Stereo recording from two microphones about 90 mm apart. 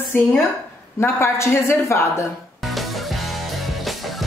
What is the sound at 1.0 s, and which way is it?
A woman's voice, 30° left (ahead or behind).